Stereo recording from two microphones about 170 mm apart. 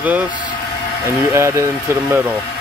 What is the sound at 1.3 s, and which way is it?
Speech, 15° right (ahead or behind).